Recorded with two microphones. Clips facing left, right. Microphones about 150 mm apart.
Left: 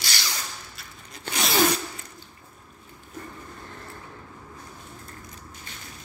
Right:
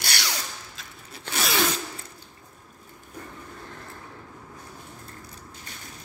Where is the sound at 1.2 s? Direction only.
Centre (ahead or behind).